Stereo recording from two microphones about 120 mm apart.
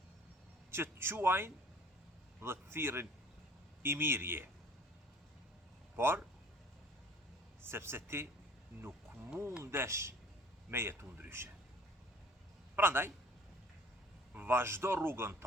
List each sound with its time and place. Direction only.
0.7 s speech: 20° right (ahead or behind)
6.0 s speech: 20° right (ahead or behind)
7.6 s speech: 20° right (ahead or behind)
9.6 s speech: 20° right (ahead or behind)
12.7 s a man's voice: 20° right (ahead or behind)
14.3 s speech: 20° right (ahead or behind)